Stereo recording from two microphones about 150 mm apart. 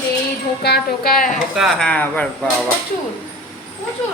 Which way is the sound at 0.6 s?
90° left.